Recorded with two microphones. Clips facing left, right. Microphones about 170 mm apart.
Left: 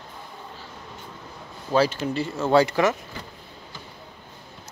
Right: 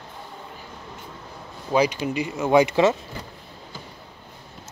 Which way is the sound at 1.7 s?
15° right (ahead or behind).